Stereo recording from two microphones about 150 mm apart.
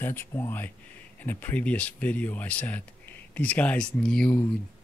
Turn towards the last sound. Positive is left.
turn(degrees=10)  # may be behind; listen again after turning